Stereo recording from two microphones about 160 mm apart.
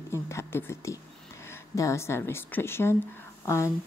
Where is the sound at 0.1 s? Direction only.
15° left (ahead or behind).